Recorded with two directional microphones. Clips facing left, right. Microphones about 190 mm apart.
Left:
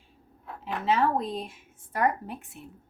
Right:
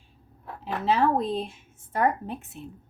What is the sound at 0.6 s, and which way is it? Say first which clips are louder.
Speech: right 2 dB; 35° right (ahead or behind).